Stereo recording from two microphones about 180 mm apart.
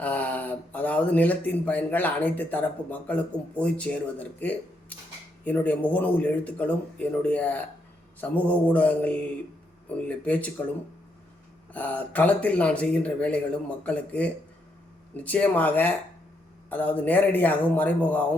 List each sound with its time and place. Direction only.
0.0 s speech: 5° left (ahead or behind)
11.7 s speech: 10° left (ahead or behind)